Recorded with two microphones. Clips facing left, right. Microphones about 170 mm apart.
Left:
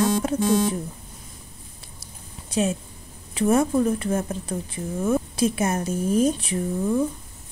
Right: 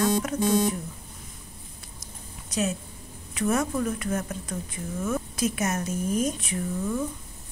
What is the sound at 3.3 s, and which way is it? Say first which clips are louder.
A woman's voice: left 6 dB; 30° left (ahead or behind).